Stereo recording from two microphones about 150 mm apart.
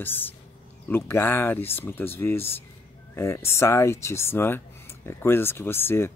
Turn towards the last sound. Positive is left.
turn(degrees=15)  # may be behind; listen again after turning